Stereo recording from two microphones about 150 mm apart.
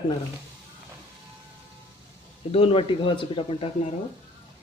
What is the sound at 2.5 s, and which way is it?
Speech, 40° left (ahead or behind).